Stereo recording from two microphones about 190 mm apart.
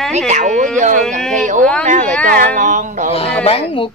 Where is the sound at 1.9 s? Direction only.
40° right (ahead or behind).